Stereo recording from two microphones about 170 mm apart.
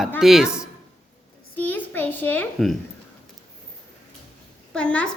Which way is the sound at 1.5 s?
10° left (ahead or behind).